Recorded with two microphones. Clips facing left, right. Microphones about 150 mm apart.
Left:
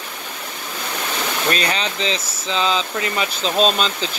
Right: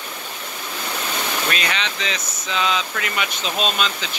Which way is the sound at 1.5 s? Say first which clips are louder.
Left 3 dB; 35° left (ahead or behind).